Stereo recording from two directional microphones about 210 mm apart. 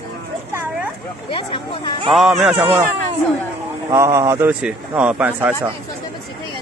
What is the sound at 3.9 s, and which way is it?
A man's voice, 15° right (ahead or behind).